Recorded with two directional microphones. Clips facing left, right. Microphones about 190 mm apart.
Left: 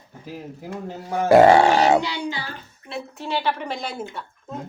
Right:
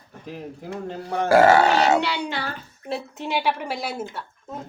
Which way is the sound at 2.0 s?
70° right (ahead or behind).